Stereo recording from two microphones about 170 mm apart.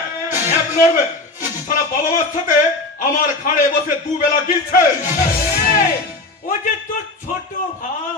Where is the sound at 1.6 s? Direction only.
50° left (ahead or behind).